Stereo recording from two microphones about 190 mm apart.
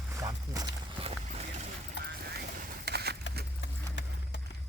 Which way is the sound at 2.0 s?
60° right (ahead or behind).